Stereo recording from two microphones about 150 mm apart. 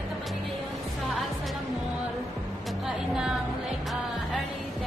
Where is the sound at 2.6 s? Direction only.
5° right (ahead or behind).